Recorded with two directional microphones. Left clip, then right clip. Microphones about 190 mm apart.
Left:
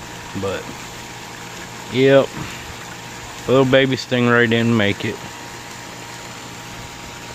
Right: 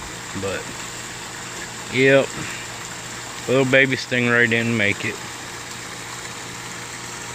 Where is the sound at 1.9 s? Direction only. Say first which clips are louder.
Left 2 dB; 15° left (ahead or behind).